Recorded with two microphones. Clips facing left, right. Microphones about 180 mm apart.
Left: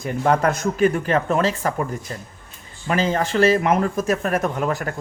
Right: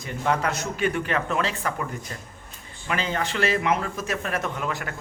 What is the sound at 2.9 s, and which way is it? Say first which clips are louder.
Speech: left 6 dB; 40° left (ahead or behind).